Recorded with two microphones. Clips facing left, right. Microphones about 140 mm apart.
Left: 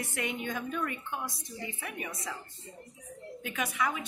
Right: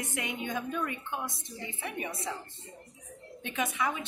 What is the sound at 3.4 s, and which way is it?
Speech, 25° right (ahead or behind).